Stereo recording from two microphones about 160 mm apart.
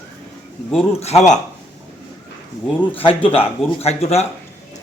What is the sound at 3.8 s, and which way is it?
Speech, 40° left (ahead or behind).